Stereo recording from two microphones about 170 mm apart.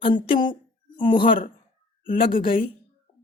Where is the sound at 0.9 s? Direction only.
30° left (ahead or behind).